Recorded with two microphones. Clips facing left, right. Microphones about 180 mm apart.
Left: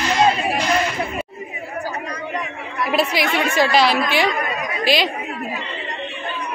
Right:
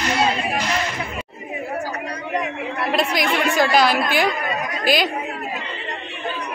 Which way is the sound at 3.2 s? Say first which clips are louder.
Even; 5° left (ahead or behind).